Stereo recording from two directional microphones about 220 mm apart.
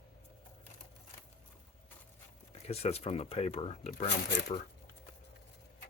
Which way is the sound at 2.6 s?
30° left (ahead or behind).